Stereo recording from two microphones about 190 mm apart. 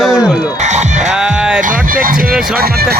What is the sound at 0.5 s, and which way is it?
Speech, 40° right (ahead or behind).